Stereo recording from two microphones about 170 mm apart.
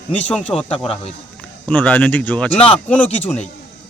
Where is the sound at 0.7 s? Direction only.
35° left (ahead or behind).